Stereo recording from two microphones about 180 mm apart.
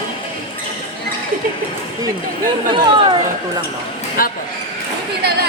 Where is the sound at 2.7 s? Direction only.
30° right (ahead or behind).